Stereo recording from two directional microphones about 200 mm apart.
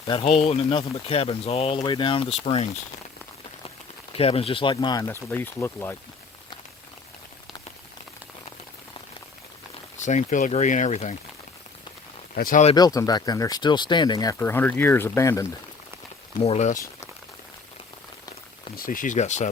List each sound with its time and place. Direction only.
0.1 s speech: 30° left (ahead or behind)
4.1 s speech: 30° left (ahead or behind); by 6.0 s 10° left (ahead or behind)
10.0 s speech: 35° left (ahead or behind)
12.3 s speech: 45° left (ahead or behind)
12.7 s speech: 20° left (ahead or behind)
16.4 s speech: 35° left (ahead or behind)
18.8 s speech: 45° left (ahead or behind)